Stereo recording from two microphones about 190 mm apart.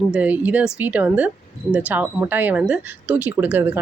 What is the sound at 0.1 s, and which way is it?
Speech, 5° right (ahead or behind).